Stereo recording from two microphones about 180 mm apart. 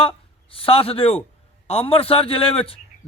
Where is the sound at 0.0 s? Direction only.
30° left (ahead or behind).